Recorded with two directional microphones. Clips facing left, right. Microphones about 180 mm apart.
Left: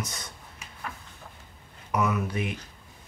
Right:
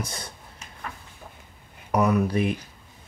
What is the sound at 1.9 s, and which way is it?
Speech, 35° right (ahead or behind).